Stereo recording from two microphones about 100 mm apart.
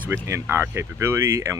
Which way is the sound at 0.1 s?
25° right (ahead or behind).